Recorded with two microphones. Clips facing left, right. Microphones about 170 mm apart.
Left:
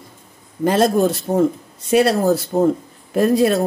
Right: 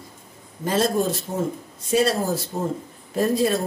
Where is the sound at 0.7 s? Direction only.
65° left (ahead or behind).